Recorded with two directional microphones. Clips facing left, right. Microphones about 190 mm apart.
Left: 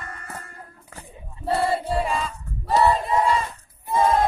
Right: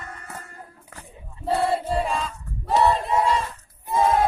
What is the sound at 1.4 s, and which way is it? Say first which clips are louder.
Choir: even; centre (ahead or behind).